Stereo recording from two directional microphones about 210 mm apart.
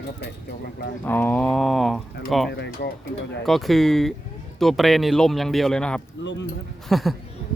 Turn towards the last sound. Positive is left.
turn(degrees=0)  # may be behind; listen again after turning